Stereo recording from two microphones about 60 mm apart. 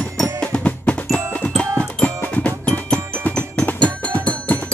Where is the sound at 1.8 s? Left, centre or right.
Left.